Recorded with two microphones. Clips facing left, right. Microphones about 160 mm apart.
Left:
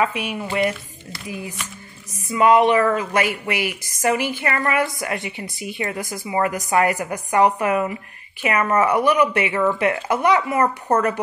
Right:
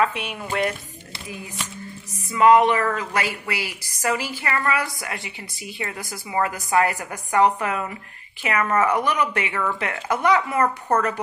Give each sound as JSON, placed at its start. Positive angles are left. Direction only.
{"t": 0.0, "sound": "a woman's voice", "side_deg": 5}
{"t": 2.3, "sound": "a woman's voice", "side_deg": 20}
{"t": 9.5, "sound": "a woman's voice", "side_deg": 25}